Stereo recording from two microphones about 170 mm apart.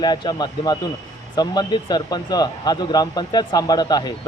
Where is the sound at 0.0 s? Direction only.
25° left (ahead or behind).